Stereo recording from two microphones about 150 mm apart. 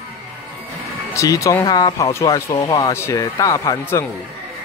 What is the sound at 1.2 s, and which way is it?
Speech, 20° left (ahead or behind).